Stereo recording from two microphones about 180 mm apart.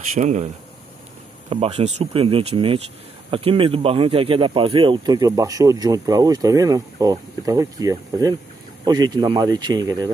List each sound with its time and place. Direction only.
0.1 s speech: 40° right (ahead or behind)
1.5 s speech: 35° right (ahead or behind)